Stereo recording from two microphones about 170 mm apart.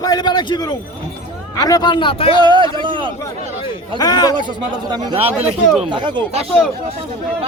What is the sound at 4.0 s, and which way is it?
Speech, 25° left (ahead or behind).